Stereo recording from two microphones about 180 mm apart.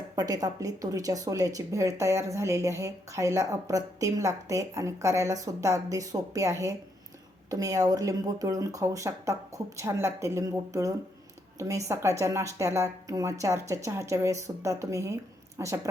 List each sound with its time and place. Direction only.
0.2 s speech: 20° right (ahead or behind)